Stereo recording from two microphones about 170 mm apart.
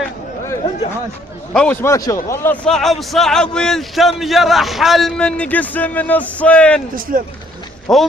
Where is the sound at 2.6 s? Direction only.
5° left (ahead or behind).